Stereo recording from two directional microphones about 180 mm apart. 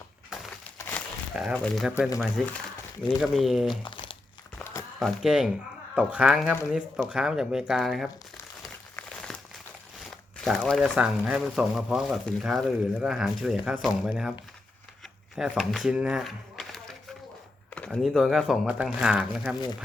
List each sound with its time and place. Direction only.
0.8 s a sound: 10° left (ahead or behind)
1.5 s speech: 5° left (ahead or behind)
3.8 s crumpling: 25° left (ahead or behind)
4.9 s speech: centre (ahead or behind)
9.3 s crumpling: centre (ahead or behind)
10.0 s speech: centre (ahead or behind)
15.4 s speech: centre (ahead or behind)